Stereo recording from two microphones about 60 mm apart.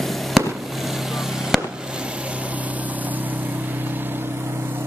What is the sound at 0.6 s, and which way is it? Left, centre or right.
Vehicle, centre.